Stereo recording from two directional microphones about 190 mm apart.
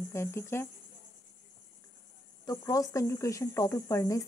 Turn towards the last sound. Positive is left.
turn(degrees=15)  # may be behind; listen again after turning